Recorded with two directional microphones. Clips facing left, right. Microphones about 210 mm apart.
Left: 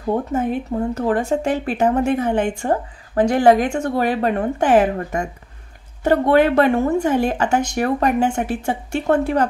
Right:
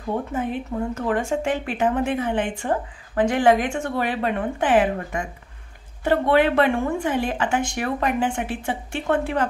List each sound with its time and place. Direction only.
0.1 s speech: 45° left (ahead or behind)